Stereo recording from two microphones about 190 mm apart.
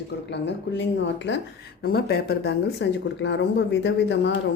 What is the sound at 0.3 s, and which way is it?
Speech, 65° left (ahead or behind).